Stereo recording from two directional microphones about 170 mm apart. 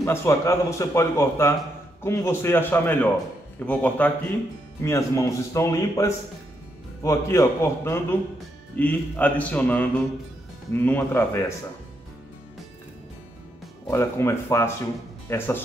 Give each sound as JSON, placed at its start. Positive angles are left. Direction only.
{"t": 0.0, "sound": "a man's voice", "side_deg": 15}
{"t": 13.8, "sound": "a man's voice", "side_deg": 15}